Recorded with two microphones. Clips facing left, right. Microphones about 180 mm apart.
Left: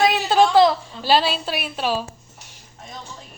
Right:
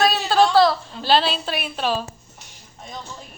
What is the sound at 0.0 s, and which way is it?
A woman's voice, 15° left (ahead or behind).